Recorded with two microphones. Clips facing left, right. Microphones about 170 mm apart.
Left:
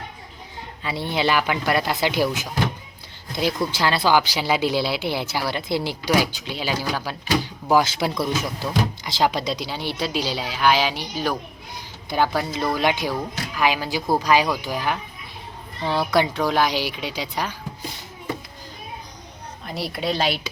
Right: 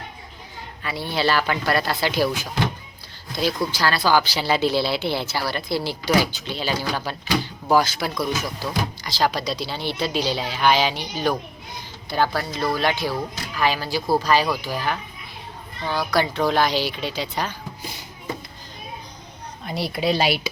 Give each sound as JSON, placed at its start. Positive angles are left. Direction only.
{"t": 0.8, "sound": "speech", "side_deg": 20}
{"t": 3.7, "sound": "speech", "side_deg": 25}
{"t": 7.7, "sound": "speech", "side_deg": 20}
{"t": 8.6, "sound": "speech", "side_deg": 0}
{"t": 9.0, "sound": "speech", "side_deg": 20}
{"t": 15.8, "sound": "speech", "side_deg": 25}
{"t": 16.2, "sound": "speech", "side_deg": 10}
{"t": 19.6, "sound": "speech", "side_deg": 0}